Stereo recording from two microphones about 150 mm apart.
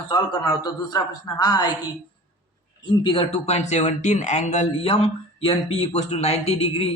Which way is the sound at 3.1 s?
40° left (ahead or behind).